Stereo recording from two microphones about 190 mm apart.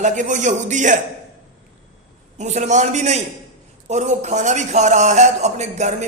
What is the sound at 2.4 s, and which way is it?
A man's voice, 40° right (ahead or behind).